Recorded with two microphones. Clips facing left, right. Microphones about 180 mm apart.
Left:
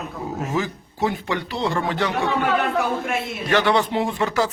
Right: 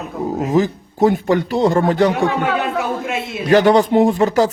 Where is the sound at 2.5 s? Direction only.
15° right (ahead or behind).